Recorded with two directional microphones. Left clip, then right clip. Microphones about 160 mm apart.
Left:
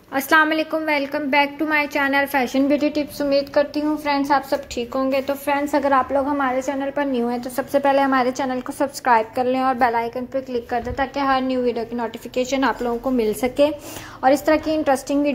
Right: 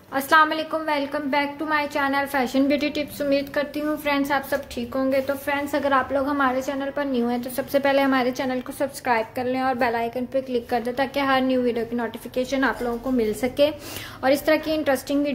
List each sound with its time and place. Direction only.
0.1 s a woman's voice: 15° left (ahead or behind)
2.7 s a woman's voice: centre (ahead or behind)
4.7 s a woman's voice: 20° left (ahead or behind); by 6.6 s 5° right (ahead or behind)
6.6 s a woman's voice: 10° left (ahead or behind); by 8.5 s 10° right (ahead or behind)
8.7 s a woman's voice: 15° left (ahead or behind)
9.8 s a woman's voice: centre (ahead or behind)
12.4 s a woman's voice: 15° left (ahead or behind)
14.2 s a woman's voice: 15° right (ahead or behind)
14.8 s a woman's voice: 10° left (ahead or behind)